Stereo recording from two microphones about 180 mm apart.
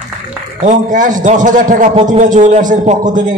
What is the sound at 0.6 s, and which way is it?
A man's voice, 45° right (ahead or behind).